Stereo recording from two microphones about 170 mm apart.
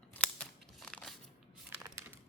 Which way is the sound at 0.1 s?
5° left (ahead or behind).